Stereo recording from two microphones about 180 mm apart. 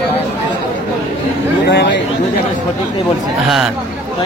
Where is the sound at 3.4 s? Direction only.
Centre (ahead or behind).